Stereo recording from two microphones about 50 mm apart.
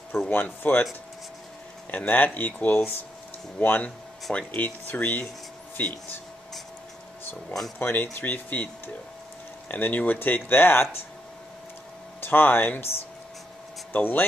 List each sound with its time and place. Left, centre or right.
0.3 s speech: left
1.9 s speech: left
4.3 s speech: left
4.6 s speech: left
7.8 s speech: left
12.2 s speech: left
13.9 s speech: left